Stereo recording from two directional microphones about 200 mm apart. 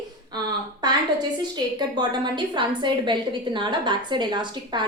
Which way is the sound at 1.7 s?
20° right (ahead or behind).